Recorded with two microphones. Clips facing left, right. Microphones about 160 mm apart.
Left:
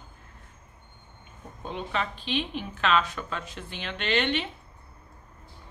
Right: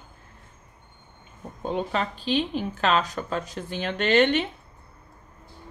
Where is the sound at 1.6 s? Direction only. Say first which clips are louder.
Right 5 dB; 40° right (ahead or behind).